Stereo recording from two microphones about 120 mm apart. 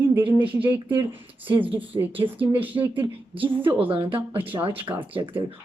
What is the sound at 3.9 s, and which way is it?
Speech, 50° right (ahead or behind).